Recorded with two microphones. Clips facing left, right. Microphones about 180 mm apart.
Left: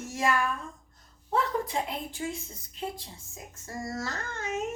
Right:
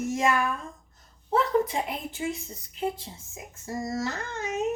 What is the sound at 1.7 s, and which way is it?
Speech, 20° right (ahead or behind).